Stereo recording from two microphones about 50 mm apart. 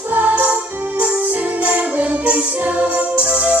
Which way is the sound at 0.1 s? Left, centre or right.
Right.